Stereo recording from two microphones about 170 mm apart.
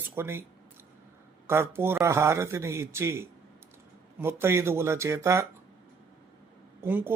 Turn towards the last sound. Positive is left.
turn(degrees=-10)  # may be behind; listen again after turning